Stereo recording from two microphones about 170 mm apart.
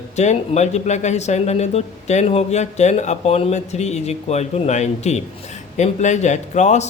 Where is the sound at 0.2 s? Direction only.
40° left (ahead or behind).